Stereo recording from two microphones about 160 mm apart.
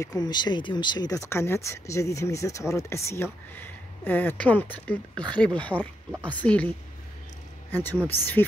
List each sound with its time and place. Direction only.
0.0 s speech: 25° left (ahead or behind); by 6.7 s 10° left (ahead or behind)
7.7 s speech: 10° left (ahead or behind)